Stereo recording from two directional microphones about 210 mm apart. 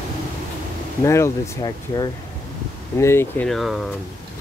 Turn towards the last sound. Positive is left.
turn(degrees=0)  # may be behind; listen again after turning